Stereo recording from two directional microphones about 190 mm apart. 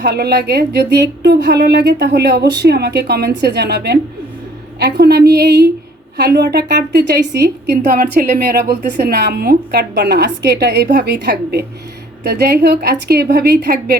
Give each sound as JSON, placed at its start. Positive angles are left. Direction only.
{"t": 0.0, "sound": "speech", "side_deg": -60}